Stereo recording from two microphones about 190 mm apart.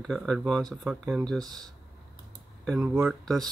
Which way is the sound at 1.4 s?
20° right (ahead or behind).